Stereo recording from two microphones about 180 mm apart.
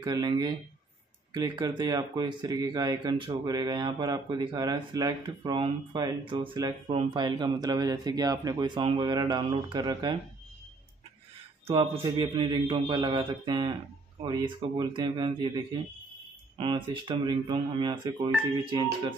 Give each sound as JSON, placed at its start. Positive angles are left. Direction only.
{"t": 0.0, "sound": "speech", "side_deg": -25}
{"t": 11.6, "sound": "speech", "side_deg": -30}